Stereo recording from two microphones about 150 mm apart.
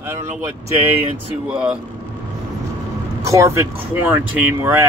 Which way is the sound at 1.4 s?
5° right (ahead or behind).